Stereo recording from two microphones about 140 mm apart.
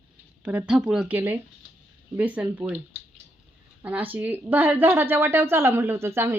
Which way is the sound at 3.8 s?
10° right (ahead or behind).